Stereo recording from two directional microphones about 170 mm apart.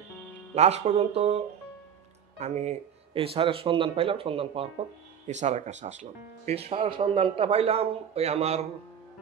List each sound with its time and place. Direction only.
0.6 s speech: 40° right (ahead or behind)